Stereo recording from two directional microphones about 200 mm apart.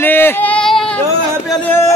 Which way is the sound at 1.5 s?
10° left (ahead or behind).